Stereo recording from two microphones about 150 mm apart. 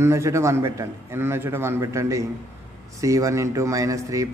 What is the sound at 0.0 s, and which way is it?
Speech, 20° right (ahead or behind).